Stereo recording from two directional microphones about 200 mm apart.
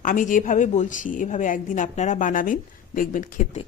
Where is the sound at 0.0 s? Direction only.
40° left (ahead or behind).